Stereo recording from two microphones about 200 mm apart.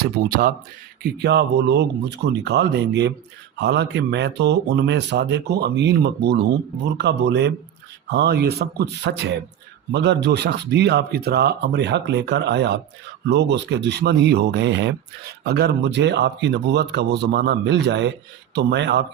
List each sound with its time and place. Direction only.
0.0 s speech: 50° right (ahead or behind)